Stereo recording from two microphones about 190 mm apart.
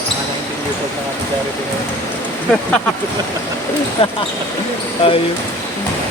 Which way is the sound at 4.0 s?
30° left (ahead or behind).